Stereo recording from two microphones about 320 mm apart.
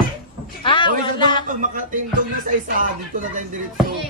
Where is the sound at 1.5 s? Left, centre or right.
Right.